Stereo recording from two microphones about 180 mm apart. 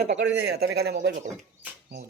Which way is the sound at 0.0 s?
70° right (ahead or behind).